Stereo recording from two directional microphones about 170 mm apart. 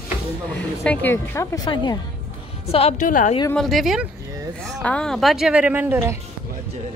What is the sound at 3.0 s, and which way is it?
Speech, 50° left (ahead or behind).